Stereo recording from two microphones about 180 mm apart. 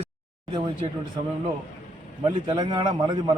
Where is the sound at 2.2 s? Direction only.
20° right (ahead or behind).